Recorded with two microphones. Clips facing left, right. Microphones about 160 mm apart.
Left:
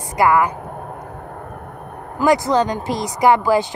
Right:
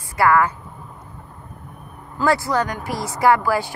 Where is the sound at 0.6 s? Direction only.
65° left (ahead or behind).